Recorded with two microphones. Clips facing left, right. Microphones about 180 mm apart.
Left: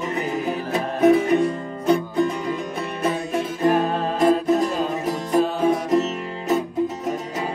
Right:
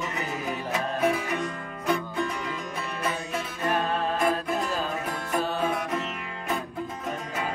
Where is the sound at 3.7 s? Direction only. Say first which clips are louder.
Left 6 dB; 20° left (ahead or behind).